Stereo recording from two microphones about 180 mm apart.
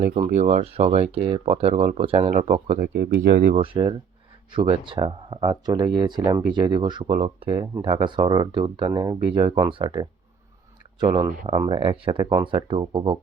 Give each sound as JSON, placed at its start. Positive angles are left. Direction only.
{"t": 0.0, "sound": "speech", "side_deg": -45}
{"t": 2.5, "sound": "speech", "side_deg": -45}
{"t": 3.5, "sound": "speech", "side_deg": -30}